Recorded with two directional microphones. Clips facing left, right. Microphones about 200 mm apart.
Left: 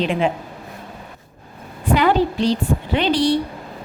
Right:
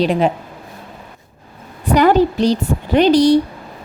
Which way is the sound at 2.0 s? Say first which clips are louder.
Right 5 dB; 40° right (ahead or behind).